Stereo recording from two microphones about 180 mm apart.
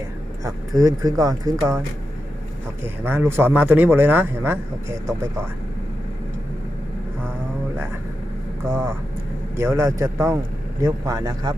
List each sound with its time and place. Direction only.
0.4 s speech: 20° right (ahead or behind)
2.8 s a man's voice: 10° right (ahead or behind)
8.6 s a man's voice: 15° right (ahead or behind)